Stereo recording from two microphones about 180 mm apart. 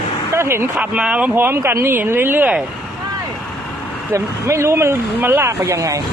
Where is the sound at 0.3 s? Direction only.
15° right (ahead or behind).